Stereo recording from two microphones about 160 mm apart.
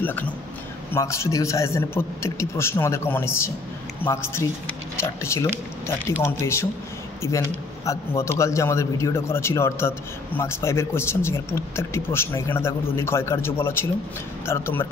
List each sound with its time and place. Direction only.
0.0 s a man's voice: 10° left (ahead or behind)